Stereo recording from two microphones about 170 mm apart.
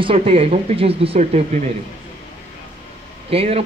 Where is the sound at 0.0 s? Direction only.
35° right (ahead or behind).